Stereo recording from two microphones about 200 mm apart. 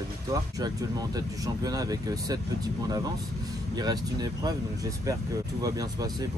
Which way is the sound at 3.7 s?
20° right (ahead or behind).